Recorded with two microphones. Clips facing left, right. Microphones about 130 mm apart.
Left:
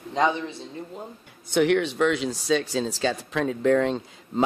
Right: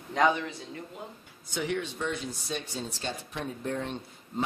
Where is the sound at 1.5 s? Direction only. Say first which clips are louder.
Left 11 dB; 70° left (ahead or behind); by 4.0 s 90° left.